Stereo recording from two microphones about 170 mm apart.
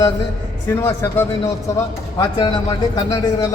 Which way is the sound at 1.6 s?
15° left (ahead or behind).